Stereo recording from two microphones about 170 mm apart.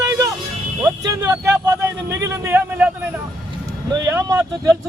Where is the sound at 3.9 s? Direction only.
20° right (ahead or behind).